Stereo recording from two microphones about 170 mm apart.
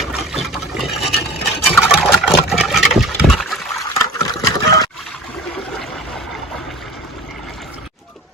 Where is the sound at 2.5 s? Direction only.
Centre (ahead or behind).